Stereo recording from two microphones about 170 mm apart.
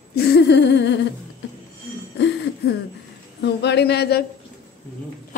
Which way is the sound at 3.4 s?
80° left.